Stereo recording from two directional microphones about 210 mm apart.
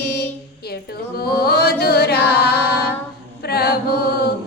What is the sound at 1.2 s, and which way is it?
Music, 50° left (ahead or behind).